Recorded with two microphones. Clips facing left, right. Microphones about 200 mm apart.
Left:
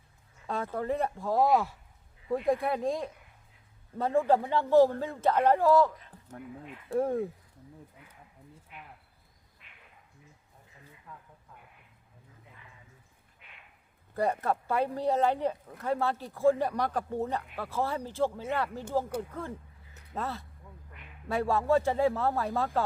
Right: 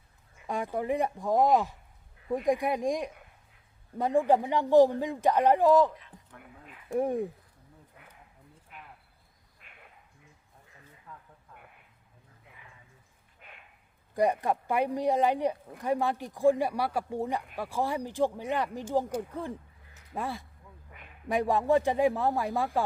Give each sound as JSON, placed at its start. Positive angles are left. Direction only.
{"t": 0.4, "sound": "speech", "side_deg": -15}
{"t": 6.0, "sound": "a sound", "side_deg": 40}
{"t": 6.9, "sound": "speech", "side_deg": -15}
{"t": 9.6, "sound": "cricket", "side_deg": -45}
{"t": 13.4, "sound": "a sound", "side_deg": -45}
{"t": 14.1, "sound": "speech", "side_deg": -15}